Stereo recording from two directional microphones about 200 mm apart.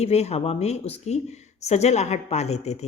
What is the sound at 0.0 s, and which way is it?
A woman's voice, 30° left (ahead or behind).